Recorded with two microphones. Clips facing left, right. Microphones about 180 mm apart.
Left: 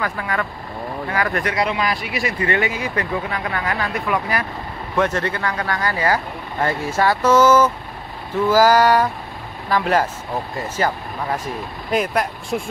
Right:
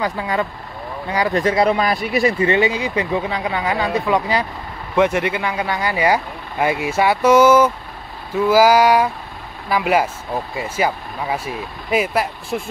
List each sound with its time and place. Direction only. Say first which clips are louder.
0.0 s speech: right 3 dB; 20° right (ahead or behind)
1.7 s speech: right 5 dB; 40° right (ahead or behind)
2.3 s speech: right 4 dB; 20° right (ahead or behind); by 12.6 s 5° right (ahead or behind)